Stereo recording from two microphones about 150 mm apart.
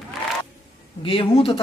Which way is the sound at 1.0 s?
40° left (ahead or behind).